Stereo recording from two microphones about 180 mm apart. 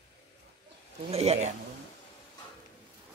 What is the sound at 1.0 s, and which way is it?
Speech, 35° right (ahead or behind).